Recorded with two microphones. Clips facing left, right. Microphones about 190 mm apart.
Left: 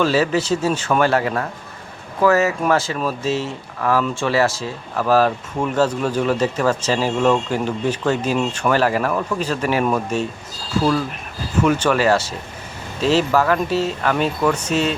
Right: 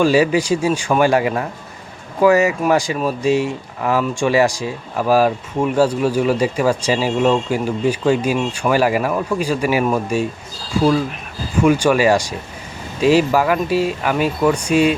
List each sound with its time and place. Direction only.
0.0 s speech: 15° right (ahead or behind)
11.6 s speech: 10° right (ahead or behind)